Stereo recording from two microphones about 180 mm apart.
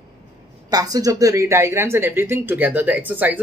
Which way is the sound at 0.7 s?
20° right (ahead or behind).